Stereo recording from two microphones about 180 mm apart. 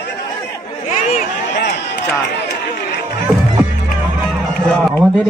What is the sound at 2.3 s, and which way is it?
Run, 65° left (ahead or behind).